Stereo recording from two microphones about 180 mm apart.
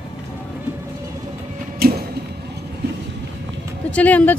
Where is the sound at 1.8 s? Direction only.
55° right (ahead or behind).